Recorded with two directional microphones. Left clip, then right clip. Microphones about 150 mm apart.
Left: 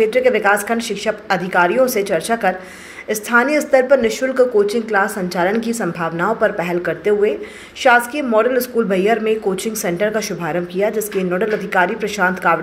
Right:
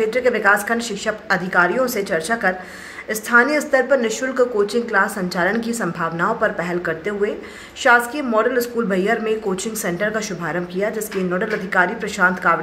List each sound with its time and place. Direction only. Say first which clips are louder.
0.0 s speech: left 3 dB; 15° left (ahead or behind)